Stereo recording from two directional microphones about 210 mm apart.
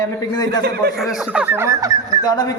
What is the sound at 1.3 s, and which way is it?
Speech, 5° right (ahead or behind).